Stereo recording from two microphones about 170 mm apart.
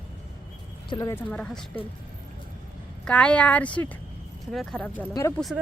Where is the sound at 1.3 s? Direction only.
5° left (ahead or behind).